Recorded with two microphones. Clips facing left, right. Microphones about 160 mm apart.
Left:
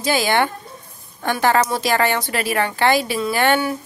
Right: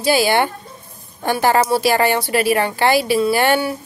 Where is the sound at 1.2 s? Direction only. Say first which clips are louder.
Right 2 dB; 35° right (ahead or behind).